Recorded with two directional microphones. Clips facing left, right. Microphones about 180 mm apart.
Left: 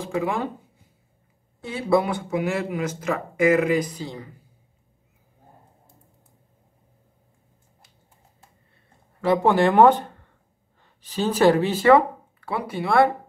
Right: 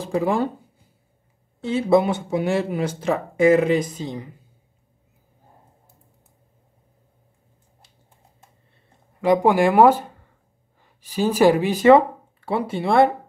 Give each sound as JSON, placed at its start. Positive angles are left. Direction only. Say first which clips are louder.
{"t": 0.0, "sound": "speech", "louder": "right 4 dB", "side_deg": -35}
{"t": 1.6, "sound": "speech", "louder": "right 4 dB", "side_deg": -25}
{"t": 9.2, "sound": "speech", "louder": "right 2 dB", "side_deg": -15}